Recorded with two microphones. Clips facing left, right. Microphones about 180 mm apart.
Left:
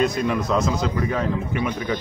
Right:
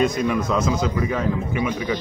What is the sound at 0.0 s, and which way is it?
A man's voice, centre (ahead or behind).